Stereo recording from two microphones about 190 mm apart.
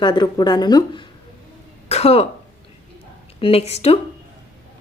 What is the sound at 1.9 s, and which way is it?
Speech, 35° left (ahead or behind).